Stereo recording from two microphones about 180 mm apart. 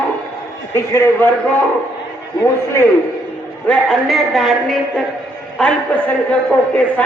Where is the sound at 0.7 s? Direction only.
15° left (ahead or behind).